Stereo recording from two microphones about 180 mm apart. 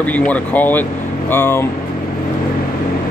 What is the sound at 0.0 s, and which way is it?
Speech, 10° left (ahead or behind).